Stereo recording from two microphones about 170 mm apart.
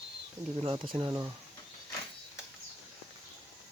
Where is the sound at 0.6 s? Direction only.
30° right (ahead or behind).